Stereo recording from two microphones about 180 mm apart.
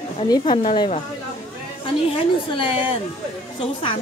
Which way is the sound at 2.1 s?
30° left (ahead or behind).